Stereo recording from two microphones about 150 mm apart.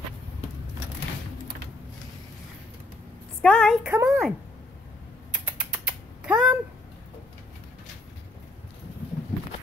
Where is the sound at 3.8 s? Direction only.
15° right (ahead or behind).